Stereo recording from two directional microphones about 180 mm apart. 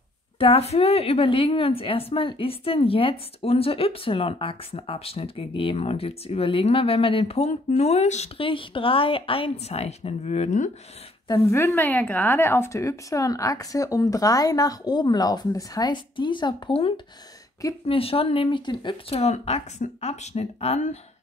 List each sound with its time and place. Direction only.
0.4 s a woman's voice: 35° left (ahead or behind)
11.2 s a woman's voice: 15° left (ahead or behind); by 21.0 s 35° left (ahead or behind)